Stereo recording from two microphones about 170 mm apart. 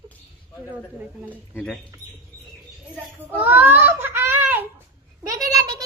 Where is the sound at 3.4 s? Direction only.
10° right (ahead or behind).